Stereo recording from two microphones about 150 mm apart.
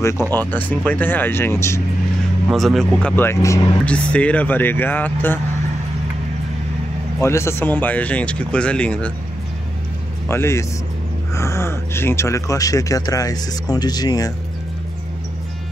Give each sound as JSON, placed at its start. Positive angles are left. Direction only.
{"t": 0.5, "sound": "speech", "side_deg": 10}
{"t": 2.4, "sound": "speech", "side_deg": 0}
{"t": 3.8, "sound": "speech", "side_deg": 10}
{"t": 7.2, "sound": "speech", "side_deg": 20}
{"t": 10.2, "sound": "speech", "side_deg": 15}